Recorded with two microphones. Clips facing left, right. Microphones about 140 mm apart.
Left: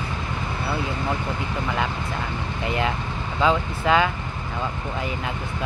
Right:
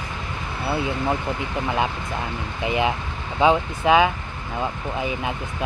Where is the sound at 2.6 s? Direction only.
15° right (ahead or behind).